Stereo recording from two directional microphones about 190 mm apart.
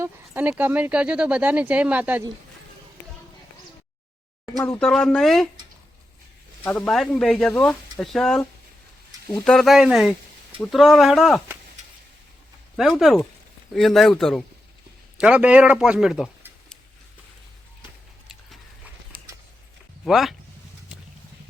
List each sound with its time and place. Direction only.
0.0 s speech: 10° right (ahead or behind)
4.8 s speech: centre (ahead or behind)
6.7 s speech: 5° left (ahead or behind)
12.7 s speech: centre (ahead or behind)
19.1 s a sound: 50° right (ahead or behind)
20.1 s speech: centre (ahead or behind)